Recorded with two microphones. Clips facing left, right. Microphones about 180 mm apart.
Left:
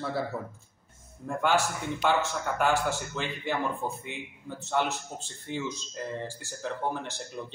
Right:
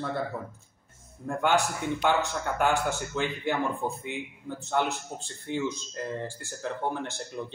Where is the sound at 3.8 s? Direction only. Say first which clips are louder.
Right 2 dB; 20° right (ahead or behind).